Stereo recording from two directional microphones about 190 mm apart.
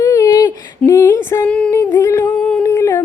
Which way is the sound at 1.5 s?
5° left (ahead or behind).